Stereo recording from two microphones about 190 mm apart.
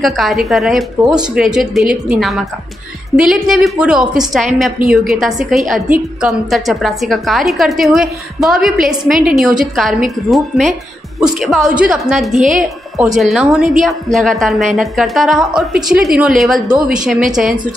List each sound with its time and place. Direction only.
0.0 s a woman's voice: centre (ahead or behind)
12.4 s a woman's voice: 45° right (ahead or behind)
12.6 s a woman's voice: centre (ahead or behind)